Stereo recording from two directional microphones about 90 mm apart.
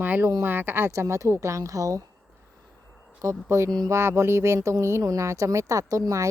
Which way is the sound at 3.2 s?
30° right (ahead or behind).